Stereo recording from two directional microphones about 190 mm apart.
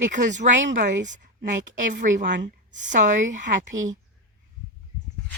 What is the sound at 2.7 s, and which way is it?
Speech, 40° right (ahead or behind).